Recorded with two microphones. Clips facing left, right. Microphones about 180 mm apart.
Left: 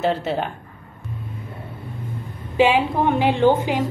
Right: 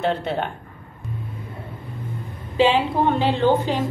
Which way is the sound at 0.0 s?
5° left (ahead or behind).